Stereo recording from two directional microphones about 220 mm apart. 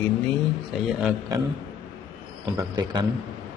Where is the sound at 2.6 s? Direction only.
20° right (ahead or behind).